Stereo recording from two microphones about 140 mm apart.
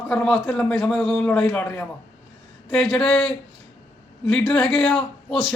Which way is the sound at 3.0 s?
15° left (ahead or behind).